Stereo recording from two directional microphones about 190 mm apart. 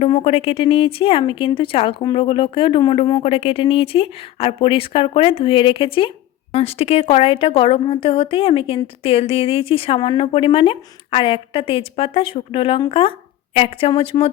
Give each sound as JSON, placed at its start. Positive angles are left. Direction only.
{"t": 0.0, "sound": "a woman's voice", "side_deg": 30}